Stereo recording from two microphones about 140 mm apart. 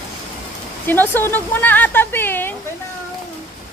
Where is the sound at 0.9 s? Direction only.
15° left (ahead or behind).